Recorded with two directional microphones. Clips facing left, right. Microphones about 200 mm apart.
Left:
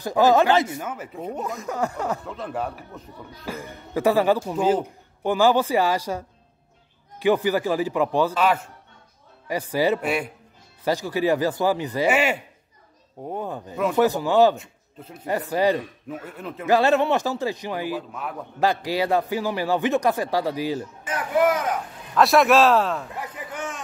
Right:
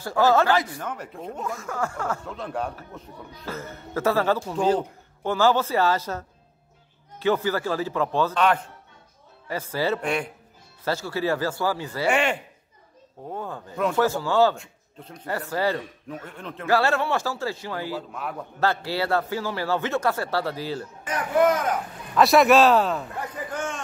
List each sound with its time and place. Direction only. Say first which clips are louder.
0.0 s a man's voice: left 2 dB; 15° left (ahead or behind)
0.8 s speech: left 2 dB; 5° left (ahead or behind)
1.4 s speech: left 2 dB; 20° left (ahead or behind)
2.2 s speech: left 1 dB; centre (ahead or behind)
3.4 s a man's voice: left 1 dB; 15° left (ahead or behind)
12.1 s speech: left 1 dB; 5° left (ahead or behind)
13.3 s a man's voice: left 3 dB; 20° left (ahead or behind)
14.6 s speech: left 2 dB; 5° left (ahead or behind)
15.2 s a man's voice: left 4 dB; 15° left (ahead or behind)
16.1 s a man's voice: left 2 dB; 5° left (ahead or behind)
16.6 s a man's voice: left 4 dB; 20° left (ahead or behind); by 23.2 s centre (ahead or behind)